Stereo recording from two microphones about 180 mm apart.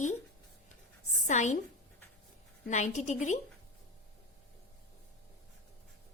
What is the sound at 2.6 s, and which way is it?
Speech, 40° left (ahead or behind).